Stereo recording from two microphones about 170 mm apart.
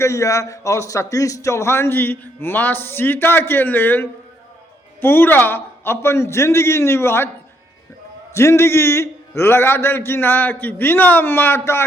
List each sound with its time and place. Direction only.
0.0 s a man's voice: 15° left (ahead or behind)
8.3 s a man's voice: 15° left (ahead or behind)